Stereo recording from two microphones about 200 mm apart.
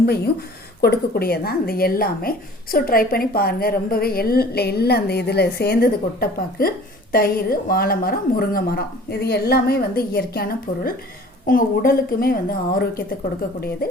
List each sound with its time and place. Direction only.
0.8 s a woman's voice: 50° left (ahead or behind)